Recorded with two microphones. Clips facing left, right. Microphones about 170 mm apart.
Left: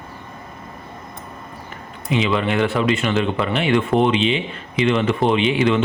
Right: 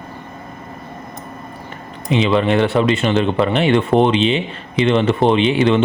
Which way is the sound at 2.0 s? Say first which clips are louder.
Right 4 dB; 35° right (ahead or behind).